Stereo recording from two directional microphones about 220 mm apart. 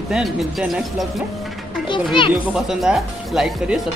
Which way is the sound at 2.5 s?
5° right (ahead or behind).